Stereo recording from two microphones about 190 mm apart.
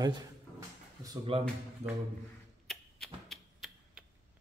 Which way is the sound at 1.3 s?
30° right (ahead or behind).